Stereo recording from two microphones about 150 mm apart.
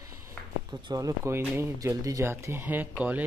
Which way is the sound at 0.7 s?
25° right (ahead or behind).